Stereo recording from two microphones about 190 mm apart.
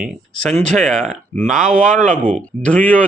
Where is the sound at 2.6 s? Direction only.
5° left (ahead or behind).